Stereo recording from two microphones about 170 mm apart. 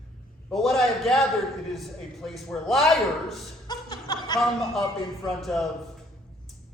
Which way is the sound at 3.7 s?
25° left (ahead or behind).